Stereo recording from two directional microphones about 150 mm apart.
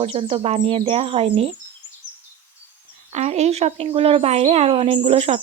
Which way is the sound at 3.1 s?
50° right (ahead or behind).